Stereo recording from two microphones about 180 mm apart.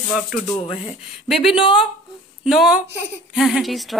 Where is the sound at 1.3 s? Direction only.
Centre (ahead or behind).